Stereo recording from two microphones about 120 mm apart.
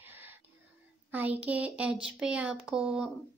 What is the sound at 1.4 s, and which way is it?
A woman's voice, 10° right (ahead or behind).